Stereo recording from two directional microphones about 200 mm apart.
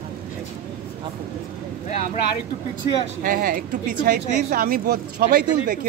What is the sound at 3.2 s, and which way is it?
A woman's voice, 45° right (ahead or behind).